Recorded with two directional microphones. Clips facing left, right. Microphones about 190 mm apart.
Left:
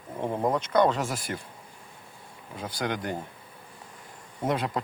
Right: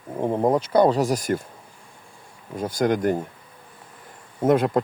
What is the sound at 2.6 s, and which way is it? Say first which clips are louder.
Speech: right 10 dB; 45° right (ahead or behind).